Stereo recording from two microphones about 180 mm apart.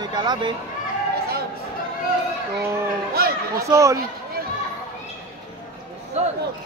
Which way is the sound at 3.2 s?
55° right (ahead or behind).